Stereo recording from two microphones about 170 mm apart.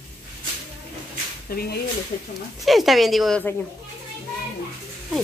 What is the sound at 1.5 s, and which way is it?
Speech, 60° left (ahead or behind).